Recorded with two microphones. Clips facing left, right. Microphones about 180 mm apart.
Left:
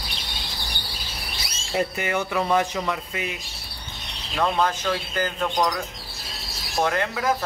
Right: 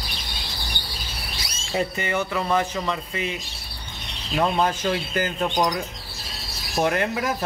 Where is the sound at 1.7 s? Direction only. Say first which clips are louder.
Even; 5° left (ahead or behind).